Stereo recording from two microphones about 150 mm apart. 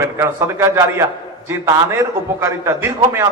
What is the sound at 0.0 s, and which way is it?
A man's voice, 20° right (ahead or behind).